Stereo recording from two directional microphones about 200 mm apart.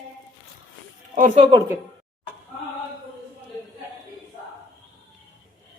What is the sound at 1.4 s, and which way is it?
Speech, 20° right (ahead or behind).